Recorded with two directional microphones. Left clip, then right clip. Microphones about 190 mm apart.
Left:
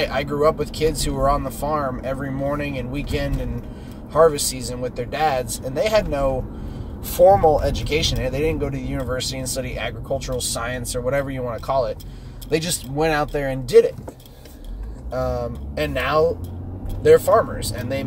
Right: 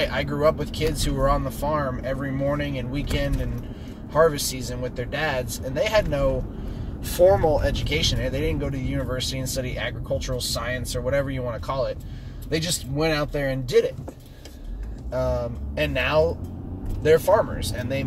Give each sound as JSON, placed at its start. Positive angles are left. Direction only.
{"t": 0.0, "sound": "speech", "side_deg": 15}
{"t": 15.9, "sound": "speech", "side_deg": 15}